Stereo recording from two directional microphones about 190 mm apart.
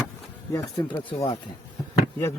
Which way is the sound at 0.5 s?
25° left (ahead or behind).